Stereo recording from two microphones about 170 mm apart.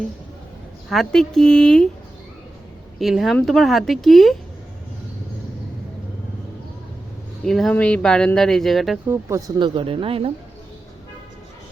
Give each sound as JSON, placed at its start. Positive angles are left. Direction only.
{"t": 0.9, "sound": "speech", "side_deg": 0}
{"t": 3.0, "sound": "speech", "side_deg": 0}
{"t": 7.4, "sound": "speech", "side_deg": 0}
{"t": 9.6, "sound": "speech", "side_deg": -30}